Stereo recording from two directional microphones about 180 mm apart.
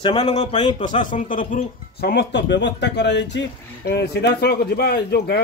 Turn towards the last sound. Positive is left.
turn(degrees=65)  # may be behind; listen again after turning